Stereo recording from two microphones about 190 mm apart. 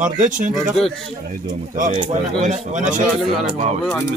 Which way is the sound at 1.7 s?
40° right (ahead or behind).